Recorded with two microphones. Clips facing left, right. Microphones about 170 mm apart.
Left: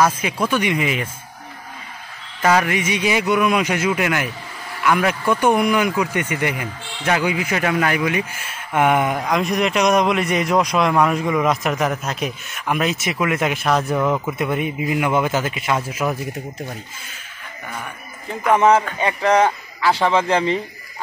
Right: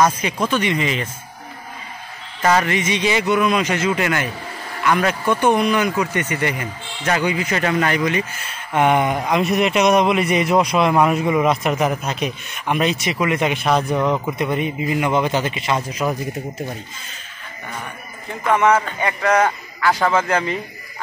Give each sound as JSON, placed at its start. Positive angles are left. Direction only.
{"t": 0.0, "sound": "a man's voice", "side_deg": 5}
{"t": 2.4, "sound": "a man's voice", "side_deg": 10}
{"t": 18.9, "sound": "a man's voice", "side_deg": 25}